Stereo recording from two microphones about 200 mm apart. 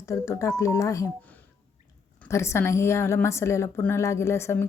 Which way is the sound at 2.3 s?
15° left (ahead or behind).